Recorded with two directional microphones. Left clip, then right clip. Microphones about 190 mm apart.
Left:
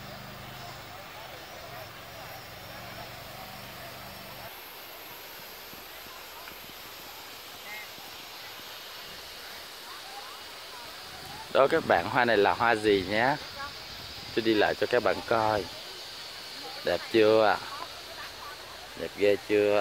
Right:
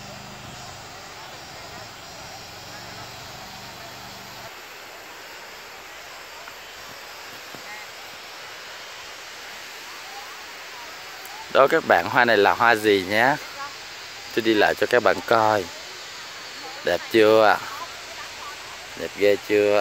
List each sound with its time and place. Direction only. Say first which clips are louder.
11.5 s speech: right 6 dB; 5° right (ahead or behind); by 15.6 s 25° right (ahead or behind)
16.8 s speech: right 6 dB; 10° right (ahead or behind)
19.1 s speech: right 5 dB; 10° right (ahead or behind)